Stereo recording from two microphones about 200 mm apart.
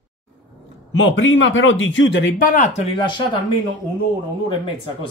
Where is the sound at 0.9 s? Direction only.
75° left (ahead or behind).